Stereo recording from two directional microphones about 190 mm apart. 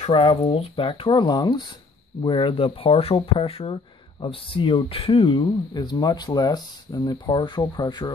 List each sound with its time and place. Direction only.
0.0 s speech: 30° left (ahead or behind)